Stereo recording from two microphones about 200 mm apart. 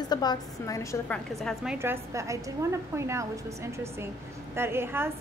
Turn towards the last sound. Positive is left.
turn(degrees=-10)  # may be behind; listen again after turning